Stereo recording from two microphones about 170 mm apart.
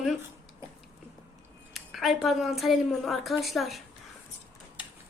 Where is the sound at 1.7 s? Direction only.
Centre (ahead or behind).